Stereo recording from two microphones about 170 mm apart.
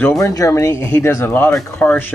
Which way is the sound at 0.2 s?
20° left (ahead or behind).